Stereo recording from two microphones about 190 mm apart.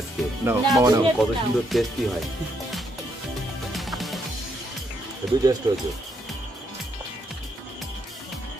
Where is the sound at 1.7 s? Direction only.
Centre (ahead or behind).